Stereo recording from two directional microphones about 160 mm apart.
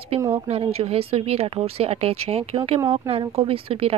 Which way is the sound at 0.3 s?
35° right (ahead or behind).